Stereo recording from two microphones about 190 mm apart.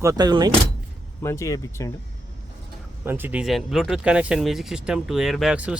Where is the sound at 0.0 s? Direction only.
20° right (ahead or behind).